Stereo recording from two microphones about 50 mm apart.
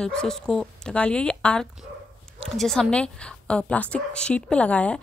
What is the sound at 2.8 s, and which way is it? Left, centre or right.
A woman's voice, left.